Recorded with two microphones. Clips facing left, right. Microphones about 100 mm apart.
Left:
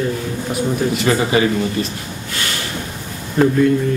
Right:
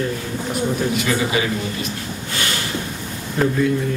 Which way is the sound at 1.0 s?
40° left (ahead or behind).